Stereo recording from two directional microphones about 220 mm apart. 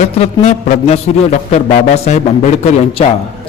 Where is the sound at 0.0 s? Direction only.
30° left (ahead or behind).